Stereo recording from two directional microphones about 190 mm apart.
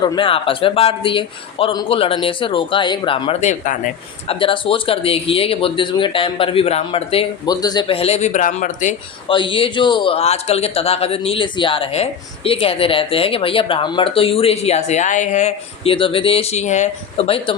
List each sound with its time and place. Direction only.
0.0 s a man's voice: 25° left (ahead or behind); by 3.8 s 40° left (ahead or behind)
4.3 s a man's voice: 25° left (ahead or behind)
9.3 s a man's voice: 25° left (ahead or behind)